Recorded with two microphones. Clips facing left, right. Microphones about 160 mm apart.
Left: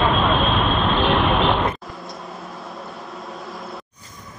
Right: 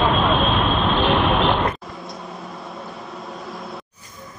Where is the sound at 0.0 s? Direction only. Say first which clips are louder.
Even; centre (ahead or behind).